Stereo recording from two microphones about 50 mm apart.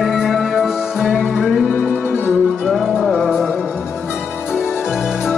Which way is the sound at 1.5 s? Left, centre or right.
Centre.